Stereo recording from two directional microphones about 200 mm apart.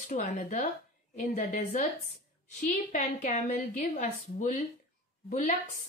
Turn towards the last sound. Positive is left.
turn(degrees=35)  # may be behind; listen again after turning